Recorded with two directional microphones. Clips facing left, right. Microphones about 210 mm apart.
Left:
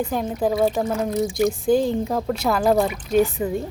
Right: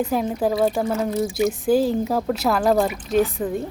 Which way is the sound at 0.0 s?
5° right (ahead or behind).